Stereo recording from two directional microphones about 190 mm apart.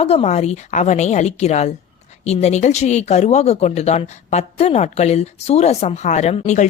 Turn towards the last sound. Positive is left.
turn(degrees=40)  # may be behind; listen again after turning